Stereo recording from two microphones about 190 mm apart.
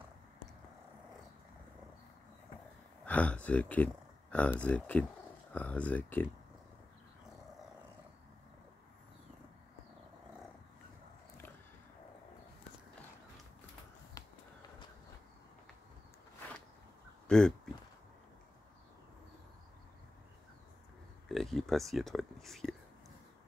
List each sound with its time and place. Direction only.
3.1 s speech: 5° left (ahead or behind)
14.2 s a sound: 20° left (ahead or behind)
17.3 s speech: 5° left (ahead or behind)
21.3 s speech: centre (ahead or behind)